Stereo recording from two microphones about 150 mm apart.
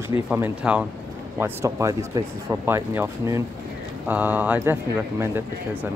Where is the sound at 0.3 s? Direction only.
10° right (ahead or behind).